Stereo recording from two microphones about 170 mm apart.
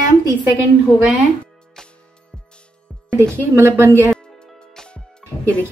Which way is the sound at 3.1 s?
15° right (ahead or behind).